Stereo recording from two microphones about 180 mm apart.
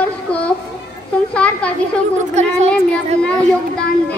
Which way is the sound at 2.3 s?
40° right (ahead or behind).